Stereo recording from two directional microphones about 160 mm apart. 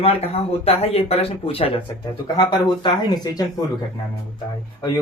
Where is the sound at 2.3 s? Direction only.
25° left (ahead or behind).